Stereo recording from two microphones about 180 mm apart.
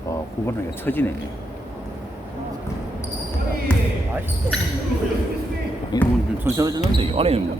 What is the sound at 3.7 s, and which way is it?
Basketball bounce, 5° left (ahead or behind).